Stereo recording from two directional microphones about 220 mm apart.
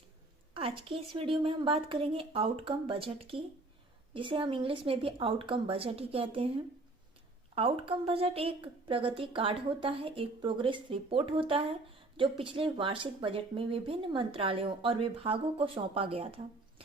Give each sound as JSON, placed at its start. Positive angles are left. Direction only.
{"t": 0.5, "sound": "speech", "side_deg": -25}
{"t": 7.5, "sound": "speech", "side_deg": -25}